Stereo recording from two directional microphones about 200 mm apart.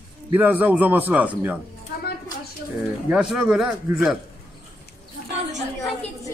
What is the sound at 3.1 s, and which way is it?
Speech, 5° right (ahead or behind).